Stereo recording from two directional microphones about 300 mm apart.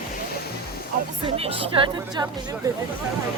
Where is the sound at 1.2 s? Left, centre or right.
Centre.